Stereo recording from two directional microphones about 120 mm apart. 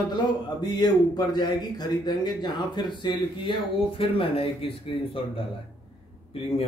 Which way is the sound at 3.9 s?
50° left (ahead or behind).